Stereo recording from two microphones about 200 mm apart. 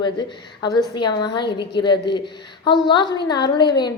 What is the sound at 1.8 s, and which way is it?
A woman's voice, 20° left (ahead or behind).